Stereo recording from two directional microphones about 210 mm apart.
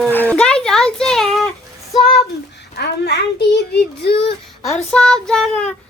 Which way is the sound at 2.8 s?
55° left (ahead or behind).